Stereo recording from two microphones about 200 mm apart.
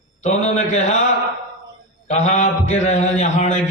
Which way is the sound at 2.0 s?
35° left (ahead or behind).